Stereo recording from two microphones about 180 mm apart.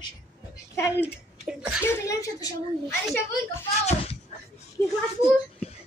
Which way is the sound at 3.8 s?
40° left (ahead or behind).